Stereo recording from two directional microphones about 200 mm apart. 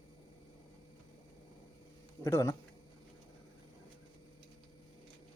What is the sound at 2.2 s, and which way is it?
Speech, 15° left (ahead or behind).